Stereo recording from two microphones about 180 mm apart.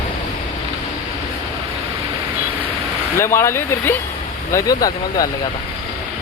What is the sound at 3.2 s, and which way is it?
Speech, 15° left (ahead or behind).